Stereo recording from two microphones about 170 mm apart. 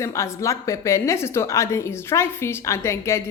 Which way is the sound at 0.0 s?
15° left (ahead or behind).